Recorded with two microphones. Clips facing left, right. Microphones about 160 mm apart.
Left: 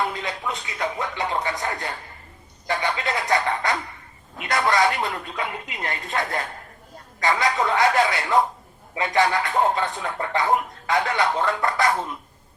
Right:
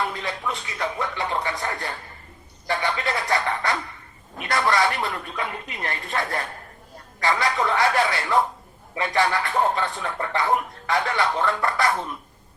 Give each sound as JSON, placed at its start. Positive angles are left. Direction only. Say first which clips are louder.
{"t": 0.0, "sound": "a sound", "louder": "left 1 dB", "side_deg": 20}
{"t": 2.6, "sound": "music", "louder": "even", "side_deg": 20}
{"t": 4.4, "sound": "speech", "louder": "left 1 dB", "side_deg": 20}